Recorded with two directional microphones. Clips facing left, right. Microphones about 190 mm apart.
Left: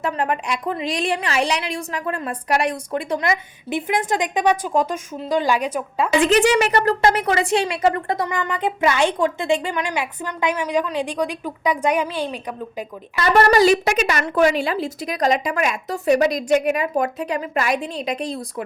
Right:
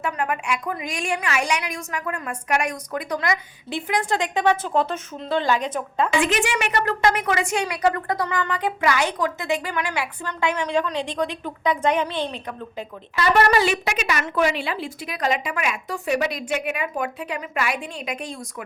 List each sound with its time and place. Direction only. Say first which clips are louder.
0.0 s a woman's voice: left 3 dB; 35° left (ahead or behind); by 6.1 s 10° left (ahead or behind)
6.1 s a woman's voice: left 9 dB; 35° left (ahead or behind); by 12.8 s 15° left (ahead or behind)
13.1 s a woman's voice: left 3 dB; 45° left (ahead or behind)